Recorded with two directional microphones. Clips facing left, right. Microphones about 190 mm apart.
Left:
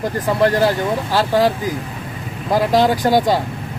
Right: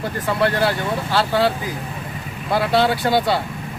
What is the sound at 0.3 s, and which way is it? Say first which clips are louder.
Speech: left 4 dB; 40° left (ahead or behind).